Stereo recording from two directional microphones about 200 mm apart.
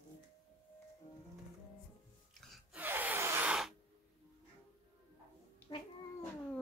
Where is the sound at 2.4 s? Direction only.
Centre (ahead or behind).